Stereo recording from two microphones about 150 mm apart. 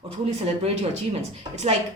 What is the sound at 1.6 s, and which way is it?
Speech, 45° right (ahead or behind).